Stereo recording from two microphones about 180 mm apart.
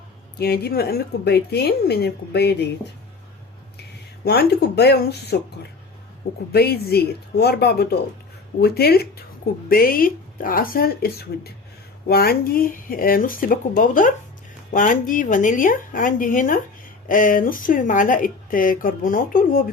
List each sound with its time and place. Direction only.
0.3 s speech: 60° left (ahead or behind)
4.2 s speech: 60° left (ahead or behind)